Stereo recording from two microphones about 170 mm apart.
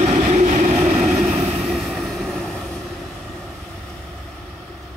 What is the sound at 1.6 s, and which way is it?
Vehicle, centre (ahead or behind).